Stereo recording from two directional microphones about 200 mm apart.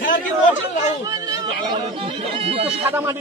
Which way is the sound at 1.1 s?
20° right (ahead or behind).